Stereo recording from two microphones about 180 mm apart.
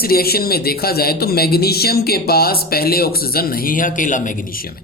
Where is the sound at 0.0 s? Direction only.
60° left (ahead or behind).